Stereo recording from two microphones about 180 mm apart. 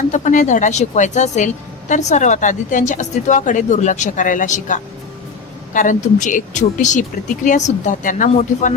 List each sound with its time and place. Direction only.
0.1 s speech: 45° left (ahead or behind)